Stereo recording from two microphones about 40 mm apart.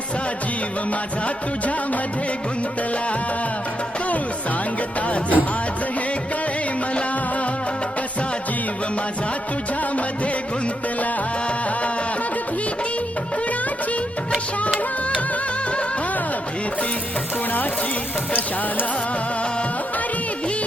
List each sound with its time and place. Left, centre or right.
5.0 s music: left